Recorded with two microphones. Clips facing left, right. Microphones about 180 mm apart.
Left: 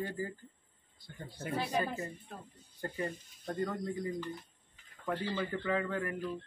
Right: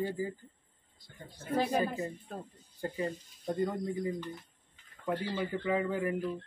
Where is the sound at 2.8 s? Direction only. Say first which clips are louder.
Right 3 dB; 10° right (ahead or behind).